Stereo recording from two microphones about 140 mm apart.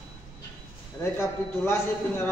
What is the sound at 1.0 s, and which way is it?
Speech, 20° left (ahead or behind).